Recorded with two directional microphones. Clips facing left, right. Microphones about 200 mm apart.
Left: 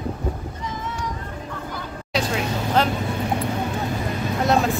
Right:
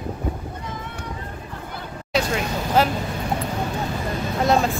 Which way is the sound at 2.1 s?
Centre (ahead or behind).